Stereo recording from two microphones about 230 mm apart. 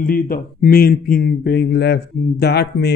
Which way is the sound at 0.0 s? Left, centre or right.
Left.